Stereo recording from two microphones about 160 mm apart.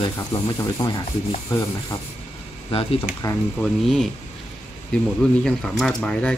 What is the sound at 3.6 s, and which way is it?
Speech, centre (ahead or behind).